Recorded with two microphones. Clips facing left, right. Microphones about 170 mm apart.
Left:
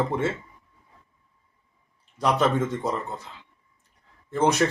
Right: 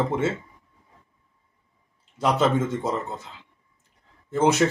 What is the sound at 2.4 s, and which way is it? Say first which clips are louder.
Speech: right 1 dB; centre (ahead or behind).